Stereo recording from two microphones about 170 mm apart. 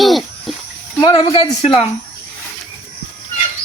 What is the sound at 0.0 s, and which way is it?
Water, centre (ahead or behind).